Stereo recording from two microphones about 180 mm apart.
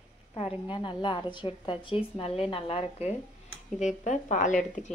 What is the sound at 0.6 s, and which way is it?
A woman's voice, 25° left (ahead or behind).